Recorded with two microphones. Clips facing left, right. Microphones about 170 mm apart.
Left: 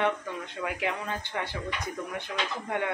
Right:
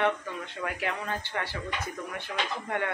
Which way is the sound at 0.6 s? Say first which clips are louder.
Left 1 dB; 15° left (ahead or behind).